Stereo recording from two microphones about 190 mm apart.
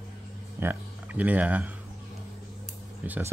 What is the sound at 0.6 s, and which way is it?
Speech, 10° right (ahead or behind).